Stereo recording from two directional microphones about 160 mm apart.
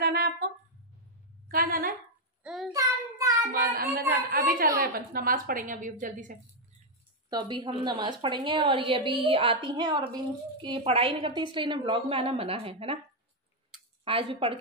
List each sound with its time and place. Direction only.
0.0 s a sound: 75° right (ahead or behind)
1.5 s a woman's voice: 65° right (ahead or behind)
2.4 s child singing: centre (ahead or behind)
2.7 s child singing: 20° right (ahead or behind)
4.3 s a woman's voice: 60° right (ahead or behind)
7.2 s a woman's voice: 25° right (ahead or behind)
14.0 s a woman's voice: 35° right (ahead or behind)